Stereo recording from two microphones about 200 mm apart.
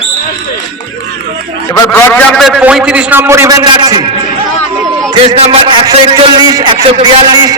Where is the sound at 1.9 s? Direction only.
10° left (ahead or behind).